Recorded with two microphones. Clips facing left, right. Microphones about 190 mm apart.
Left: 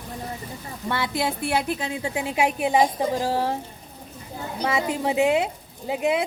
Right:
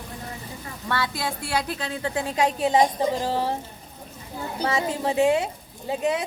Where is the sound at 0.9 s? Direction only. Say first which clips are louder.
Left 2 dB; 20° left (ahead or behind).